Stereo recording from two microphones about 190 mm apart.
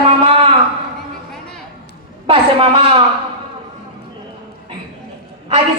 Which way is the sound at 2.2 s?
30° right (ahead or behind).